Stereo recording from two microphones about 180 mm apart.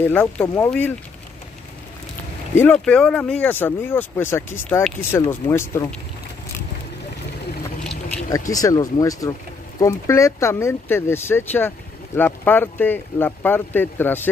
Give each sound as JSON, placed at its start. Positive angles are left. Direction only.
{"t": 0.0, "sound": "speech", "side_deg": 10}
{"t": 2.5, "sound": "speech", "side_deg": 10}
{"t": 8.3, "sound": "speech", "side_deg": 20}